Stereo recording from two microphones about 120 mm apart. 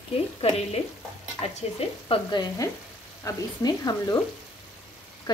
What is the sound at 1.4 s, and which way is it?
Stir, 55° left (ahead or behind).